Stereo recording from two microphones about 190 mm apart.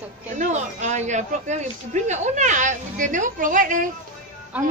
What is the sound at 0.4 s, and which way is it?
Speech, 40° right (ahead or behind).